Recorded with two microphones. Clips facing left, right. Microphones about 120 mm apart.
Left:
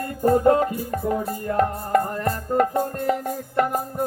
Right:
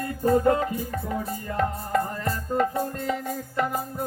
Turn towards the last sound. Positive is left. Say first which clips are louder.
# left 4 dB
turn(degrees=50)  # may be behind; listen again after turning